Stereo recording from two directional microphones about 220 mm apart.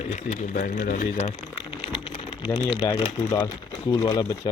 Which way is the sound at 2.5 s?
10° left (ahead or behind).